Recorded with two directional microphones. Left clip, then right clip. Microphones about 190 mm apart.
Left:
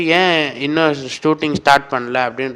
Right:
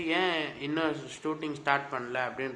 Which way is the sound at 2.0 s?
45° left (ahead or behind).